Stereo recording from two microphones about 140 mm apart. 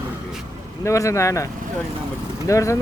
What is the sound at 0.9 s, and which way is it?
Speech, 20° left (ahead or behind).